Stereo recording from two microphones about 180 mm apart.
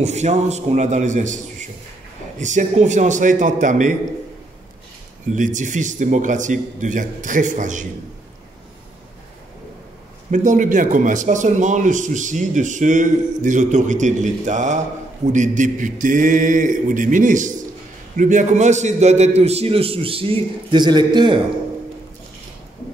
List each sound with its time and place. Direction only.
0.0 s a man's voice: 40° right (ahead or behind)
2.4 s speech: 40° right (ahead or behind)
5.3 s speech: 45° right (ahead or behind)
10.3 s a man's voice: 45° right (ahead or behind); by 21.4 s 25° right (ahead or behind)